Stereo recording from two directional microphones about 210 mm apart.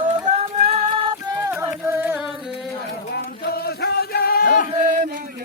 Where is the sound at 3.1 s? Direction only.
50° left (ahead or behind).